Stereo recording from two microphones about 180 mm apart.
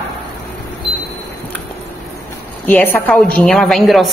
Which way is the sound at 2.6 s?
10° left (ahead or behind).